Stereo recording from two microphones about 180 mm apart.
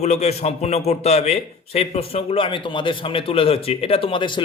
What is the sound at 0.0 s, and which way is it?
A man's voice, 40° left (ahead or behind).